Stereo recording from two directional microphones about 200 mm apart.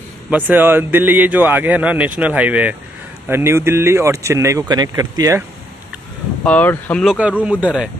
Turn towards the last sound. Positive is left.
turn(degrees=-5)  # may be behind; listen again after turning